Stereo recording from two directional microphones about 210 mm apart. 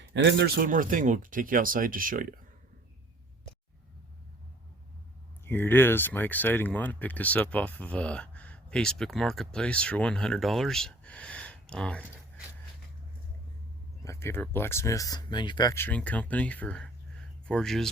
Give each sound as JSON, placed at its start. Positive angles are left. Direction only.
{"t": 0.0, "sound": "speech", "side_deg": -55}
{"t": 5.5, "sound": "speech", "side_deg": 10}
{"t": 14.0, "sound": "speech", "side_deg": 15}